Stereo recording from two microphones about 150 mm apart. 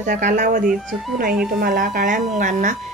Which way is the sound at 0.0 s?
60° right (ahead or behind).